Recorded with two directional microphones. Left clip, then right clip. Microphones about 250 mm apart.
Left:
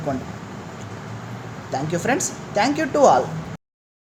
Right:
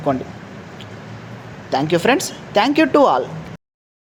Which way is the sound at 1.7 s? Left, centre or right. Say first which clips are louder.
Right 7 dB; right.